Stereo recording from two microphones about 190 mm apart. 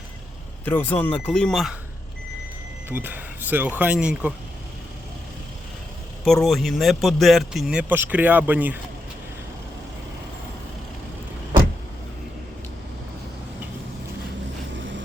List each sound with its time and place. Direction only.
0.6 s speech: 10° left (ahead or behind)
2.9 s speech: 10° right (ahead or behind)
6.2 s speech: centre (ahead or behind)
14.8 s vehicle: 75° right (ahead or behind)